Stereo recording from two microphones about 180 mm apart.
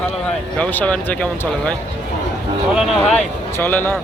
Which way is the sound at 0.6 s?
10° left (ahead or behind).